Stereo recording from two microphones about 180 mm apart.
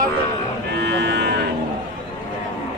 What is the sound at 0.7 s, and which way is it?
Livestock, 70° right (ahead or behind).